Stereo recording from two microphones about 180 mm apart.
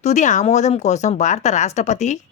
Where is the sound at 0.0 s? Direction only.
40° left (ahead or behind).